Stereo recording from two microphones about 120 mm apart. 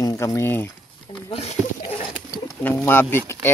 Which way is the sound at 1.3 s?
55° left (ahead or behind).